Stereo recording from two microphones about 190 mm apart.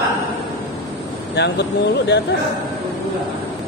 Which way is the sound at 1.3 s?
65° left (ahead or behind).